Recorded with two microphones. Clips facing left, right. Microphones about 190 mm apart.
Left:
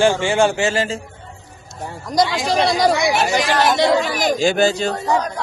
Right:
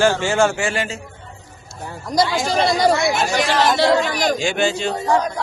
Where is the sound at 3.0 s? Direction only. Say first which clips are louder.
Left 1 dB; 15° left (ahead or behind).